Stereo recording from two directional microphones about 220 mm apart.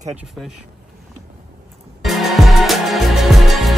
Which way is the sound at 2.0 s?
Centre (ahead or behind).